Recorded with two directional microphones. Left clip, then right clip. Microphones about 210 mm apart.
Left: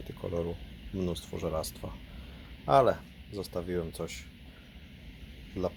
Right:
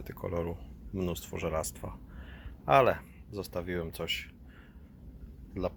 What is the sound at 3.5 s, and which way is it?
Speech, 10° right (ahead or behind).